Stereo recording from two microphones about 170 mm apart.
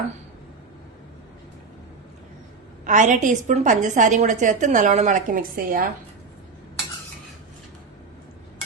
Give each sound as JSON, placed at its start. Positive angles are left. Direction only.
{"t": 2.8, "sound": "a woman's voice", "side_deg": -45}